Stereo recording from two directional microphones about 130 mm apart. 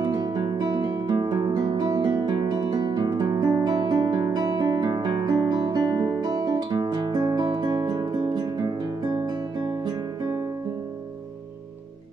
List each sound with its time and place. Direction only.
0.0 s music: 30° right (ahead or behind)
4.3 s guitar: 30° right (ahead or behind)